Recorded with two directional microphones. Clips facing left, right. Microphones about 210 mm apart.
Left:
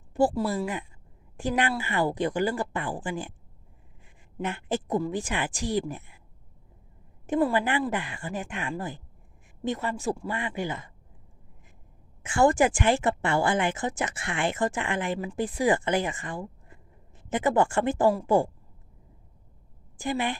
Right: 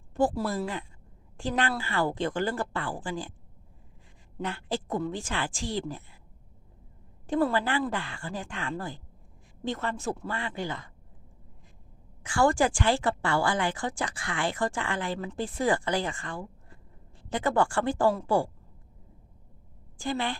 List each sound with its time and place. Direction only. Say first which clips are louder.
0.1 s a sound: left 2 dB; 15° left (ahead or behind)
0.4 s speech: left 2 dB; 10° left (ahead or behind)
4.4 s speech: left 3 dB; 20° left (ahead or behind)
7.3 s speech: left 2 dB; 15° left (ahead or behind)
12.2 s speech: left 3 dB; 20° left (ahead or behind)
20.0 s speech: left 2 dB; 15° left (ahead or behind)